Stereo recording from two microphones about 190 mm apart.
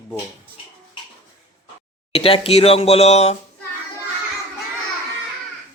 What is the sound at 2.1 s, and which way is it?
Speech, 30° left (ahead or behind).